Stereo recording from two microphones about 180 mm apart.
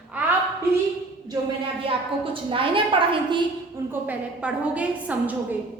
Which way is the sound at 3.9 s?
5° right (ahead or behind).